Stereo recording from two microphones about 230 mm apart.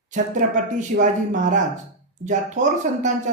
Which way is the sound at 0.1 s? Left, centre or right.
Right.